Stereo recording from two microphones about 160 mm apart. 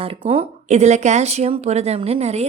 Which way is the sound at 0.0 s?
35° right (ahead or behind).